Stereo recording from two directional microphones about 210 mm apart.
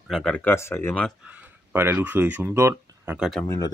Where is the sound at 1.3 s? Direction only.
10° right (ahead or behind).